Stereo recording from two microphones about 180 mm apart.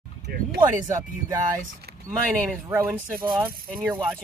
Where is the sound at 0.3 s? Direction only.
60° right (ahead or behind).